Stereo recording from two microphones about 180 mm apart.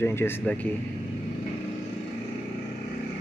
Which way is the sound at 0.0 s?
15° left (ahead or behind).